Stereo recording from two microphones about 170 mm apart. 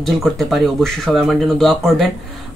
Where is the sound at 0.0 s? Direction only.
Centre (ahead or behind).